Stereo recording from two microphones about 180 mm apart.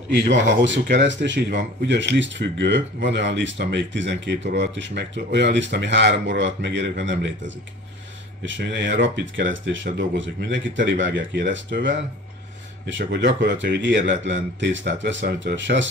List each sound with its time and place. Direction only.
0.2 s a man's voice: 75° right (ahead or behind)